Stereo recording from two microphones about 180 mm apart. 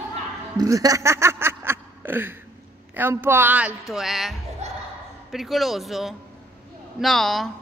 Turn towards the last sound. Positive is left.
turn(degrees=0)  # may be behind; listen again after turning